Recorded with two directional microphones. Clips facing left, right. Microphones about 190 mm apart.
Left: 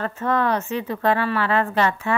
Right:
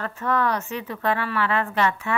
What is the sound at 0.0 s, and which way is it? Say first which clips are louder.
Speech: left 2 dB; 25° left (ahead or behind).